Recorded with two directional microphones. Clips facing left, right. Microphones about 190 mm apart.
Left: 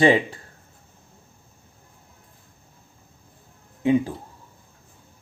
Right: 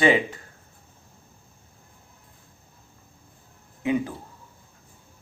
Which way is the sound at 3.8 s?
30° left (ahead or behind).